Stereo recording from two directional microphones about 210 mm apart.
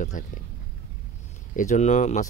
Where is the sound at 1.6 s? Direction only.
35° left (ahead or behind).